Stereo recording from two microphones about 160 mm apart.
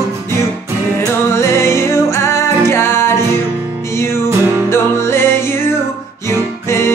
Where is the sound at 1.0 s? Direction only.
15° left (ahead or behind).